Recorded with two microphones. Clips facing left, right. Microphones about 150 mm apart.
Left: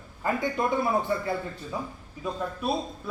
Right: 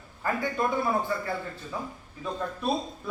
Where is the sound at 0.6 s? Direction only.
20° left (ahead or behind).